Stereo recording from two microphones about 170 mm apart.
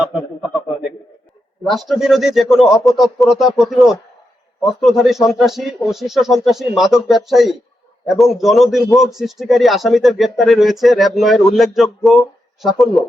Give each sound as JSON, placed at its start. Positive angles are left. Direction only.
{"t": 1.6, "sound": "a man's voice", "side_deg": 0}